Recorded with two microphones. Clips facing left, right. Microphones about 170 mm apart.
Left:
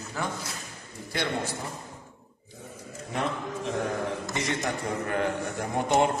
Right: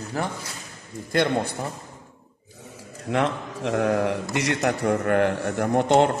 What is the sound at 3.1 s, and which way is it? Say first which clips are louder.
A man's voice: right 6 dB; 75° right (ahead or behind).